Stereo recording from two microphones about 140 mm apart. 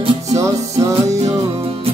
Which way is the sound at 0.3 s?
25° right (ahead or behind).